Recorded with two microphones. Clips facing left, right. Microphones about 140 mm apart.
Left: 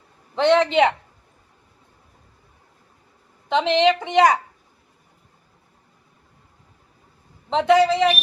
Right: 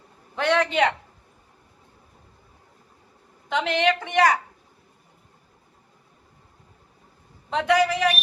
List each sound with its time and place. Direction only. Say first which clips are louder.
0.3 s a woman's voice: left 5 dB; 20° left (ahead or behind)
3.5 s a woman's voice: left 5 dB; 20° left (ahead or behind)
7.5 s a woman's voice: left 5 dB; 25° left (ahead or behind)